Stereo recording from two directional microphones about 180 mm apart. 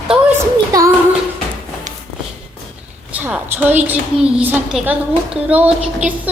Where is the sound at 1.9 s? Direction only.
45° right (ahead or behind).